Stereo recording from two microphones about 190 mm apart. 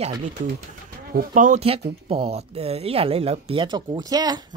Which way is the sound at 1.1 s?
45° right (ahead or behind).